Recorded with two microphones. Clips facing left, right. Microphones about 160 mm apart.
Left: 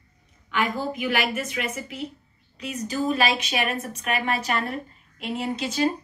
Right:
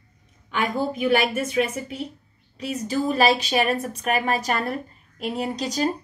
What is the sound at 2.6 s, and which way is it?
A woman's voice, 35° right (ahead or behind).